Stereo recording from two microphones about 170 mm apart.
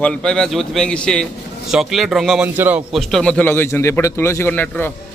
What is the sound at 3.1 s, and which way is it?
A man's voice, 5° left (ahead or behind).